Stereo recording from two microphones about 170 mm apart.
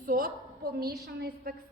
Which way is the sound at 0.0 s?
55° right (ahead or behind).